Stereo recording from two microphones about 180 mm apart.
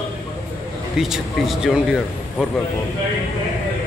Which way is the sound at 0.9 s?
5° right (ahead or behind).